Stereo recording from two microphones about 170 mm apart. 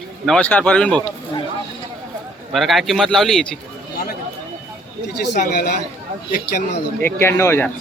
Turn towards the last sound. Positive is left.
turn(degrees=15)  # may be behind; listen again after turning